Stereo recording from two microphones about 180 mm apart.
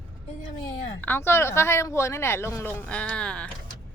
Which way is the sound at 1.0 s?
10° left (ahead or behind).